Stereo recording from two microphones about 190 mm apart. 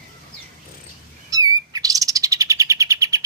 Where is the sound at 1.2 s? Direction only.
20° right (ahead or behind).